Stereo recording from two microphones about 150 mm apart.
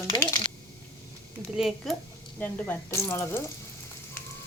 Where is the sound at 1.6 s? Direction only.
Centre (ahead or behind).